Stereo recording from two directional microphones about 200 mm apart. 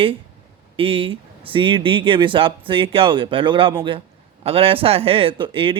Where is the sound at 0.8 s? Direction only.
25° right (ahead or behind).